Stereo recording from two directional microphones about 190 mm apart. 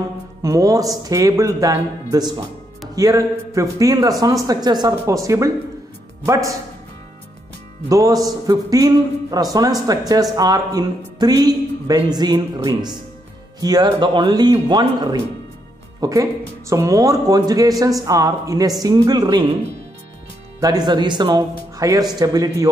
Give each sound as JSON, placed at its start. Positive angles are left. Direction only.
{"t": 0.4, "sound": "speech", "side_deg": -15}
{"t": 7.9, "sound": "speech", "side_deg": -20}
{"t": 20.6, "sound": "speech", "side_deg": -20}